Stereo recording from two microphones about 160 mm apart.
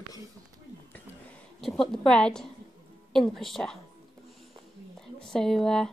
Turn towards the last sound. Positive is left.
turn(degrees=5)  # may be behind; listen again after turning